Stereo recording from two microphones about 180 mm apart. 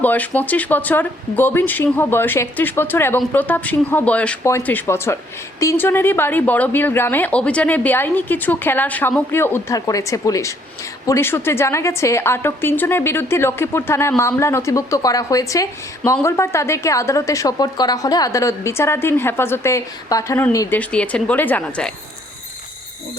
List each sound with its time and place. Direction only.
0.0 s a woman's voice: 10° left (ahead or behind)